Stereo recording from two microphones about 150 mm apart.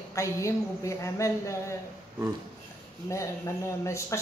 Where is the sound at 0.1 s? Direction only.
20° left (ahead or behind).